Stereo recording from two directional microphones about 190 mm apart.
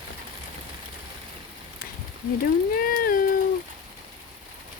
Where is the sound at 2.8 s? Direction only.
50° left (ahead or behind).